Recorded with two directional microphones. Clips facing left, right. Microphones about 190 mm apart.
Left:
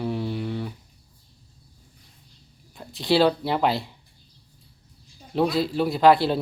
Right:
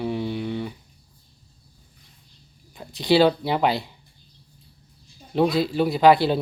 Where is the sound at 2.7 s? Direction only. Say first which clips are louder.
Right 2 dB; centre (ahead or behind).